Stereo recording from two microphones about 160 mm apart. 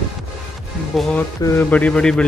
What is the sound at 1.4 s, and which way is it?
Speech, 20° left (ahead or behind).